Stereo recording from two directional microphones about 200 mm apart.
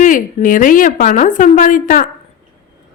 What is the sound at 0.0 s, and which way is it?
A woman's voice, 40° left (ahead or behind).